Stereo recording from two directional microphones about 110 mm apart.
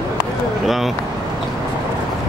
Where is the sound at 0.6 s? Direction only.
Centre (ahead or behind).